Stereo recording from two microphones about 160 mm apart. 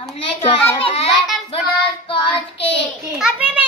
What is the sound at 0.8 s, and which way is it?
Speech, 35° left (ahead or behind).